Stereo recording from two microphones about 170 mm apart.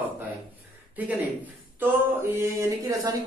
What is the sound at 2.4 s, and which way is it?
Speech, 20° right (ahead or behind).